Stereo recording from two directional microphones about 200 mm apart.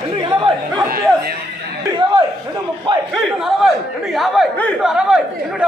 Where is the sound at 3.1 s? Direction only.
Centre (ahead or behind).